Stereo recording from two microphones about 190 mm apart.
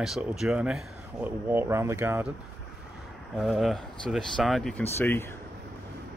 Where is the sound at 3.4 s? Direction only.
Centre (ahead or behind).